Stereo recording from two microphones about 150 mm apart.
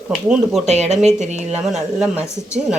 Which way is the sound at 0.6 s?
50° right (ahead or behind).